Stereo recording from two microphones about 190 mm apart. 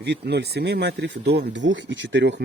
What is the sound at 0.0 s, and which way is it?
Speech, 60° right (ahead or behind).